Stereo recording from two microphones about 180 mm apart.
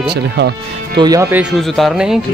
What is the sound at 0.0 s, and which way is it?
Speech, 65° right (ahead or behind).